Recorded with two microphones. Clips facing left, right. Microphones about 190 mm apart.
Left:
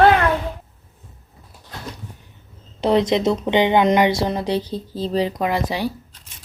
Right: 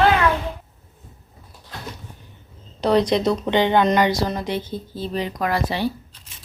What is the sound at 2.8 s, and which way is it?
Speech, 20° left (ahead or behind).